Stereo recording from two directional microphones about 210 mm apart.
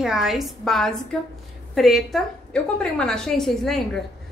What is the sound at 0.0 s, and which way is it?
A woman's voice, centre (ahead or behind).